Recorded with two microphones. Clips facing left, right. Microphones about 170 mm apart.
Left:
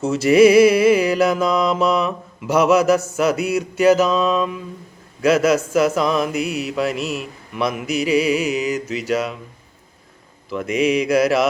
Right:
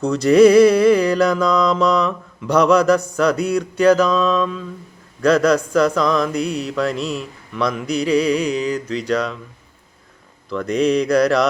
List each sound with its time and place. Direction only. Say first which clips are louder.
0.0 s mantra: right 1 dB; 5° left (ahead or behind)
10.5 s mantra: right 1 dB; 5° left (ahead or behind)